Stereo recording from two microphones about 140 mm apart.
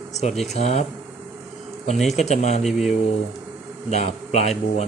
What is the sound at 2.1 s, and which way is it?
Speech, 55° left (ahead or behind).